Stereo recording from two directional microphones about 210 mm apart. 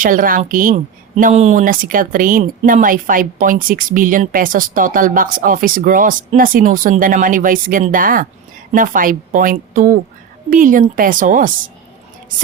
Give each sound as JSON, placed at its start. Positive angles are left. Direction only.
{"t": 0.0, "sound": "speech", "side_deg": -40}